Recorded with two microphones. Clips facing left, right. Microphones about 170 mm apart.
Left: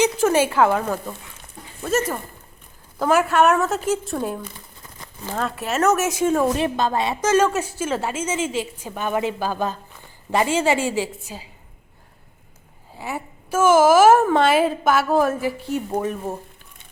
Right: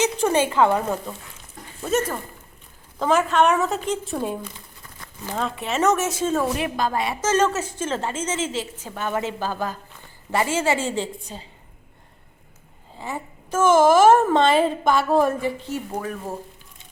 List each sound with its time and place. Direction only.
0.0 s a sound: 5° left (ahead or behind)
0.5 s a woman's voice: 5° left (ahead or behind)
6.6 s a woman's voice: 25° left (ahead or behind)
7.2 s a woman's voice: 10° left (ahead or behind)
13.0 s a woman's voice: 10° left (ahead or behind)
15.7 s a woman's voice: 20° left (ahead or behind)